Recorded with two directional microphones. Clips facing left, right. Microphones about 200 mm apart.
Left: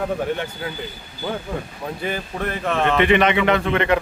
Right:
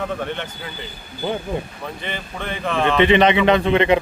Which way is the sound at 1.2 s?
20° right (ahead or behind).